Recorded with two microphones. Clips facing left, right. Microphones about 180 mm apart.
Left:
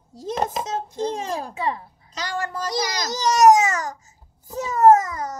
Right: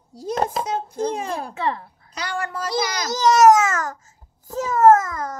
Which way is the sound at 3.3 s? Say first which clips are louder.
Even; 15° left (ahead or behind).